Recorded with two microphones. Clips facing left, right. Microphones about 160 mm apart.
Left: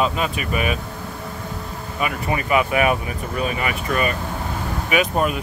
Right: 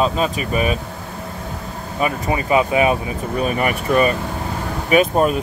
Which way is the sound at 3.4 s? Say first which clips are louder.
Right 5 dB; 40° right (ahead or behind).